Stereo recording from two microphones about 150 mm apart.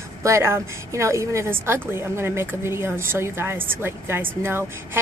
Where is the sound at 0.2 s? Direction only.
20° right (ahead or behind).